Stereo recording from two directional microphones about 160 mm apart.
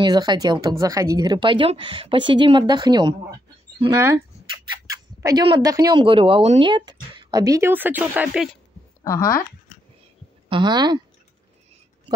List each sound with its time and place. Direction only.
0.0 s speech: 25° right (ahead or behind)
3.9 s speech: 15° right (ahead or behind)
9.0 s speech: 15° left (ahead or behind)
10.5 s speech: 25° right (ahead or behind)